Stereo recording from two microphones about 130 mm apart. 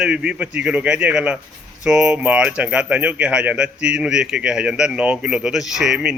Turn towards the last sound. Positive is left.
turn(degrees=-5)  # may be behind; listen again after turning